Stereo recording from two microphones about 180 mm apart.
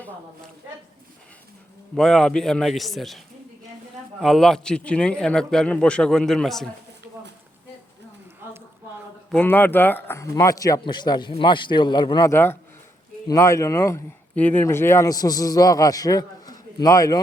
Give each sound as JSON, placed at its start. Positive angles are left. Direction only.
{"t": 2.0, "sound": "a man's voice", "side_deg": 5}
{"t": 4.2, "sound": "a man's voice", "side_deg": 0}
{"t": 9.3, "sound": "speech", "side_deg": 10}